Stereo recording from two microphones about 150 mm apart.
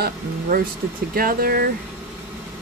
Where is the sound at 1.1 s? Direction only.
80° right.